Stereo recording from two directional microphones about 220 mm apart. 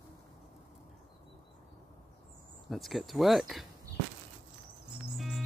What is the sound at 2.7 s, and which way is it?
Speech, centre (ahead or behind).